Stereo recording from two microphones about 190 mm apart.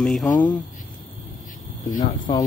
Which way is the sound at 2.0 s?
25° left (ahead or behind).